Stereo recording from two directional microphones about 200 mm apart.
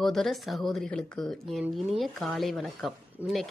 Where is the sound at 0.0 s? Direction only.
Centre (ahead or behind).